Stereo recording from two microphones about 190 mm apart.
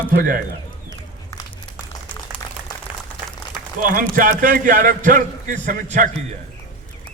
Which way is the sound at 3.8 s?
45° right (ahead or behind).